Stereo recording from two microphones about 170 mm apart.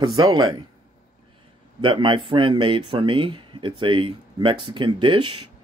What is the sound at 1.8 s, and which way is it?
Speech, 30° right (ahead or behind).